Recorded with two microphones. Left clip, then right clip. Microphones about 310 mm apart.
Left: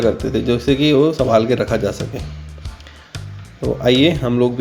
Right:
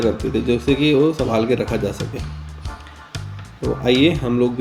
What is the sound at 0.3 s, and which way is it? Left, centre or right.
Speech, centre.